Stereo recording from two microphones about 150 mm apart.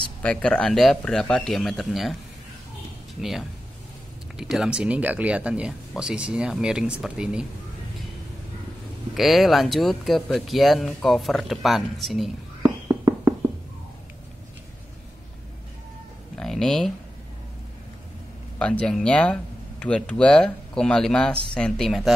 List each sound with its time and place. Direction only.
0.2 s speech: 5° left (ahead or behind)
3.2 s speech: 5° right (ahead or behind)
9.1 s speech: centre (ahead or behind)
12.6 s a sound: 20° right (ahead or behind)
16.3 s a sound: 5° left (ahead or behind)
18.6 s speech: 5° left (ahead or behind)